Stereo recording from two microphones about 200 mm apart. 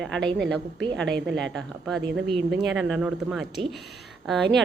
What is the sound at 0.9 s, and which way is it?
Speech, 5° left (ahead or behind).